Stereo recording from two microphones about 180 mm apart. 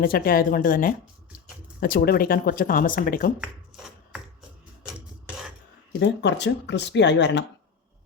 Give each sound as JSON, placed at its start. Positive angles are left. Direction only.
{"t": 0.0, "sound": "speech", "side_deg": 55}
{"t": 3.7, "sound": "a sound", "side_deg": 0}
{"t": 6.0, "sound": "speech", "side_deg": 75}